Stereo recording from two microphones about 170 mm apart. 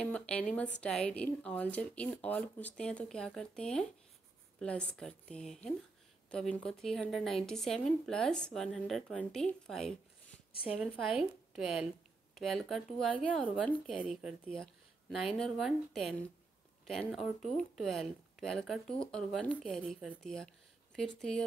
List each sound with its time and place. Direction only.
0.0 s speech: 5° left (ahead or behind)
10.5 s speech: 35° left (ahead or behind)
11.1 s a woman's voice: 5° right (ahead or behind)
13.9 s speech: 5° right (ahead or behind)